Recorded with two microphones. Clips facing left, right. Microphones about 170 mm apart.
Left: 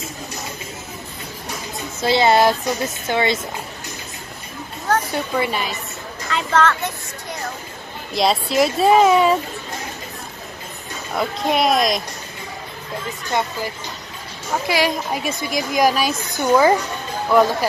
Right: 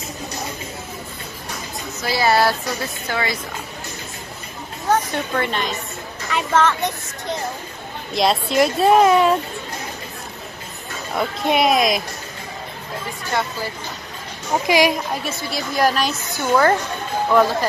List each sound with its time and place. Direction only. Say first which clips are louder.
2.0 s speech: left 3 dB; 25° left (ahead or behind)
5.1 s a woman's voice: left 1 dB; 5° left (ahead or behind)
6.3 s speech: even; 10° right (ahead or behind)
8.1 s speech: even; centre (ahead or behind)
11.1 s speech: right 1 dB; centre (ahead or behind)
13.3 s speech: left 1 dB; 20° left (ahead or behind)
14.7 s speech: right 4 dB; 15° right (ahead or behind)
15.1 s a woman's voice: left 3 dB; 15° left (ahead or behind)